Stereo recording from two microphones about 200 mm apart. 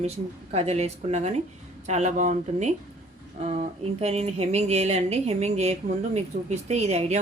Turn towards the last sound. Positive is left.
turn(degrees=-30)  # may be behind; listen again after turning